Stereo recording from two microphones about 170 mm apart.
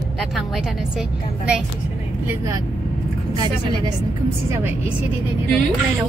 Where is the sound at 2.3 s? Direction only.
20° right (ahead or behind).